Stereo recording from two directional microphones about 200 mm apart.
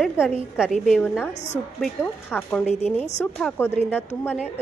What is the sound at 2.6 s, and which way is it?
Speech, 35° left (ahead or behind).